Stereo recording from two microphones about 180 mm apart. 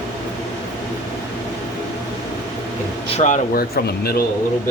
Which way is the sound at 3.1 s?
45° left (ahead or behind).